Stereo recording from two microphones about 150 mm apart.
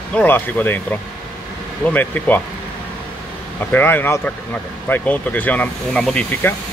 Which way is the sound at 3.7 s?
15° left (ahead or behind).